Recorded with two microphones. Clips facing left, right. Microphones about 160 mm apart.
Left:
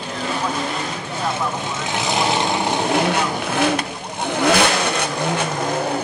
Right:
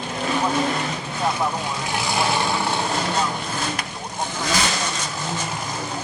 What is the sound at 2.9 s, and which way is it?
Vehicle, 65° left (ahead or behind).